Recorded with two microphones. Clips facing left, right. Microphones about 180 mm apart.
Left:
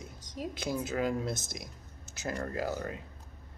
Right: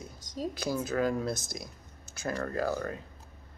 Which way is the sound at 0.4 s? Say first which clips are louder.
Right 2 dB; 15° left (ahead or behind).